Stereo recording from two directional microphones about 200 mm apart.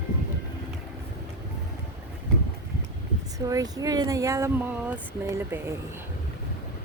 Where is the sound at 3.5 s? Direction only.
20° right (ahead or behind).